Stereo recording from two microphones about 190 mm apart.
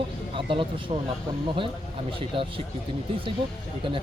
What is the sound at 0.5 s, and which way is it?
Speech, 25° right (ahead or behind).